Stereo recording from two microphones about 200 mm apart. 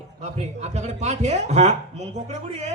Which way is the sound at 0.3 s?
35° right (ahead or behind).